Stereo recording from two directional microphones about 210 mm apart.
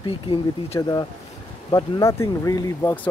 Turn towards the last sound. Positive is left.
turn(degrees=10)  # may be behind; listen again after turning